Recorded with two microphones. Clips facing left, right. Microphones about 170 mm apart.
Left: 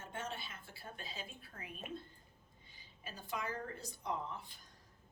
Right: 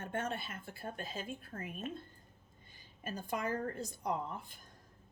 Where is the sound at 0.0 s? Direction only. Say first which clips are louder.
Right 6 dB; 55° right (ahead or behind).